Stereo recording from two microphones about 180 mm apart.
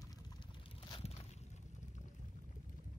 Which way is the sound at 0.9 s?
35° left (ahead or behind).